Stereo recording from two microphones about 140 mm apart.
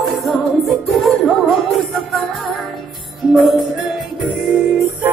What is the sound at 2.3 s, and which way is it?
Music, centre (ahead or behind).